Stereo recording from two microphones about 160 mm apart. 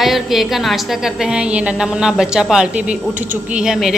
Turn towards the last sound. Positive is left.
turn(degrees=-5)  # may be behind; listen again after turning